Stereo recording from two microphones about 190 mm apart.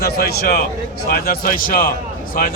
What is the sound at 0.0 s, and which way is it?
A man's voice, 55° left (ahead or behind).